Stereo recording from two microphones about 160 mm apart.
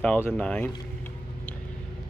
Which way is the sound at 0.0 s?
10° left (ahead or behind).